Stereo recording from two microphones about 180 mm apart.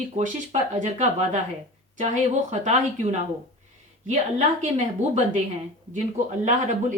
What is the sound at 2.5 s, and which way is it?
Speech, 40° right (ahead or behind).